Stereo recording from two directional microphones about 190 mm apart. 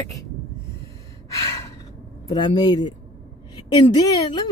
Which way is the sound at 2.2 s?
20° left (ahead or behind).